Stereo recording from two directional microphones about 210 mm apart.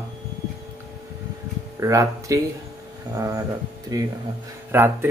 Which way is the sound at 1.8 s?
15° right (ahead or behind).